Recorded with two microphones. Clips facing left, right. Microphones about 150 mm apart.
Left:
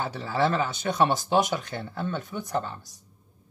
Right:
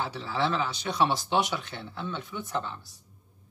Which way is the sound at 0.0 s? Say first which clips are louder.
Left 4 dB; 45° left (ahead or behind).